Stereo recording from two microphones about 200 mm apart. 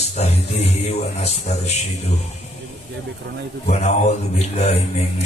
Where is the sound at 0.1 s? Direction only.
35° left (ahead or behind).